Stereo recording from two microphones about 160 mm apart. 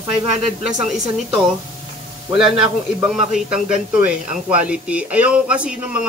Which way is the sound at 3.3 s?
5° right (ahead or behind).